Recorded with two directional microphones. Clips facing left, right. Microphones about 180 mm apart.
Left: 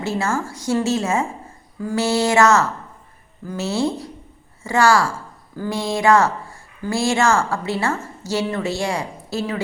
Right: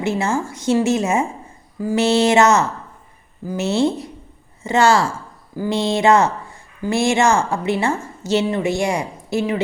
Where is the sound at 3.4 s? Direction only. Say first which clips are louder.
Right 3 dB; 10° right (ahead or behind).